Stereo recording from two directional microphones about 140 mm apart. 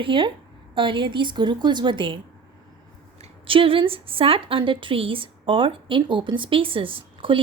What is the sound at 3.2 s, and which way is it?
Speech, 40° right (ahead or behind).